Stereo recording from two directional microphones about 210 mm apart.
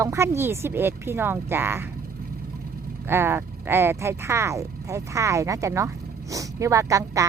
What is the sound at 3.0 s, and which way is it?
Speech, 10° right (ahead or behind).